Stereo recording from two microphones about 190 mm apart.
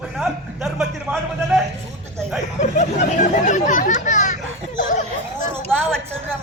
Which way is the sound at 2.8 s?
40° left (ahead or behind).